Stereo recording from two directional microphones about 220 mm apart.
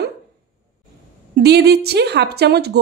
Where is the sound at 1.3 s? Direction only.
50° right (ahead or behind).